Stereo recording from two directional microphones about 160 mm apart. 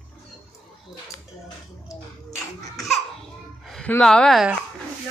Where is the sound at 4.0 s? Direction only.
5° left (ahead or behind).